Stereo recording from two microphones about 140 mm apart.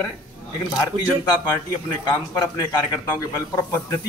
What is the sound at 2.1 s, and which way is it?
A man's voice, 25° left (ahead or behind).